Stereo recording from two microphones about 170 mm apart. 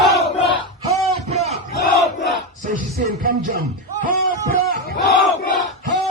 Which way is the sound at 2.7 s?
40° right (ahead or behind).